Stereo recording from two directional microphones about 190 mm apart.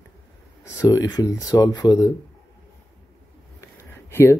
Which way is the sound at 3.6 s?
15° left (ahead or behind).